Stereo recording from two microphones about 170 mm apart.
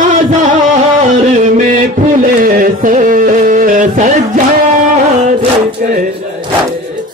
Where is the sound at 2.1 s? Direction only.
55° right (ahead or behind).